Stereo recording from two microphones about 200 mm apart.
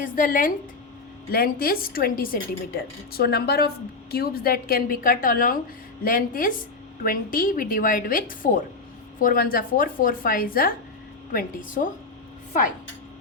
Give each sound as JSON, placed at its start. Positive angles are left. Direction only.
{"t": 0.0, "sound": "speech", "side_deg": 45}